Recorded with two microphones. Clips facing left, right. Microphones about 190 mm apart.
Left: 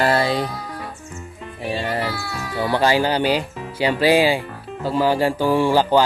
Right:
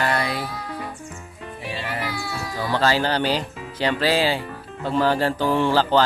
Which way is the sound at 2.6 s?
15° left (ahead or behind).